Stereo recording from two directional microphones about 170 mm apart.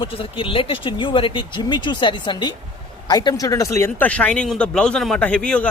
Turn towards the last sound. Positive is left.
turn(degrees=5)  # may be behind; listen again after turning